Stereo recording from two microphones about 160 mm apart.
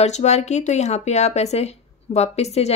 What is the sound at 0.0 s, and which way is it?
Speech, 45° left (ahead or behind).